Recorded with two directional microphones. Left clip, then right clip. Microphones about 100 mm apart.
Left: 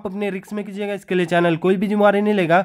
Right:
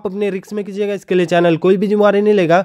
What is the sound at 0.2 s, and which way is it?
Speech, 30° right (ahead or behind).